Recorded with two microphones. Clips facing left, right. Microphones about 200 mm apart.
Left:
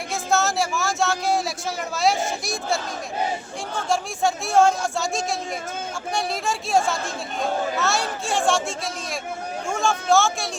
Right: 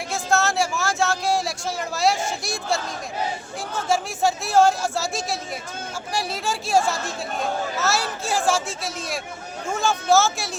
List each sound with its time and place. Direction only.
0.1 s a sound: centre (ahead or behind)
3.8 s speech: centre (ahead or behind)
9.6 s speech: 5° right (ahead or behind)